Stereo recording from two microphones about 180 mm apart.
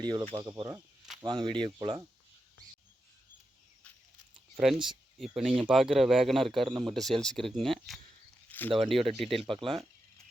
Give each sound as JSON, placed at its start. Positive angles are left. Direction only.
{"t": 0.0, "sound": "speech", "side_deg": -25}
{"t": 4.5, "sound": "speech", "side_deg": -5}
{"t": 8.4, "sound": "a sound", "side_deg": 10}
{"t": 9.1, "sound": "speech", "side_deg": 0}
{"t": 9.4, "sound": "speech", "side_deg": -30}